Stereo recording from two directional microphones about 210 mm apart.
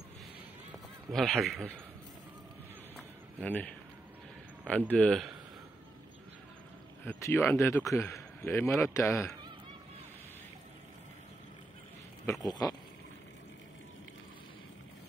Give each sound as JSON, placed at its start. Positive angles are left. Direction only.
{"t": 1.1, "sound": "a man's voice", "side_deg": 0}
{"t": 3.3, "sound": "a man's voice", "side_deg": 5}
{"t": 7.1, "sound": "a man's voice", "side_deg": 10}
{"t": 12.4, "sound": "a sound", "side_deg": 20}